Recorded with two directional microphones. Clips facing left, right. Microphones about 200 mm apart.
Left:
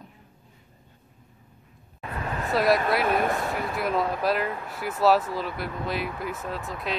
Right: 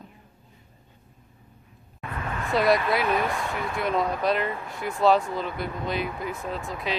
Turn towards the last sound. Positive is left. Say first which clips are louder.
# right 1 dB
turn(degrees=0)  # may be behind; listen again after turning